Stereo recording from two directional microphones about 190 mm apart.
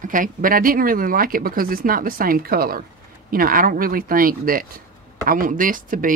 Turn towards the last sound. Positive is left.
turn(degrees=-45)  # may be behind; listen again after turning